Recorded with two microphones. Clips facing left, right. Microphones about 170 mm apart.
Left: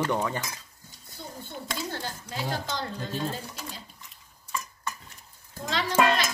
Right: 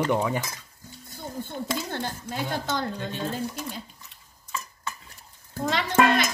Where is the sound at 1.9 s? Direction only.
50° right (ahead or behind).